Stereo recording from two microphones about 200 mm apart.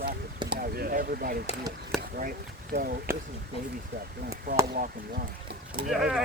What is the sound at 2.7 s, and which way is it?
Speech, 55° right (ahead or behind).